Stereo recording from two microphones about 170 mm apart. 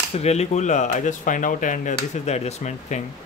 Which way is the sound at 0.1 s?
40° left (ahead or behind).